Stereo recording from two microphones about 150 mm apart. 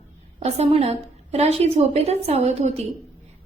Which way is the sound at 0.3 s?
45° right (ahead or behind).